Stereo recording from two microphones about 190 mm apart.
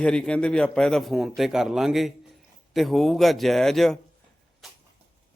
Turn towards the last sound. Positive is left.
turn(degrees=0)  # may be behind; listen again after turning